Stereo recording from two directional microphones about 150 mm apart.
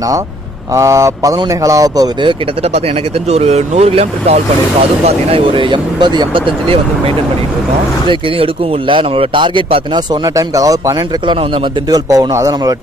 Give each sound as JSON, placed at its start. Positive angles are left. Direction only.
{"t": 0.7, "sound": "speech", "side_deg": -20}
{"t": 3.3, "sound": "speech", "side_deg": -45}
{"t": 8.1, "sound": "speech", "side_deg": -35}